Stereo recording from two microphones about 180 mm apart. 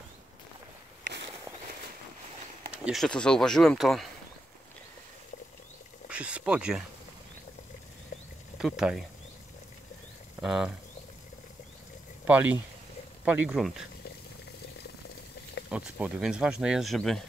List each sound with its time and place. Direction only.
2.8 s speech: centre (ahead or behind)
6.0 s a sound: 5° right (ahead or behind)
8.1 s a sound: 40° left (ahead or behind)
8.5 s speech: 5° right (ahead or behind)
10.4 s speech: centre (ahead or behind)
12.3 s speech: 10° right (ahead or behind)
15.7 s speech: 5° right (ahead or behind)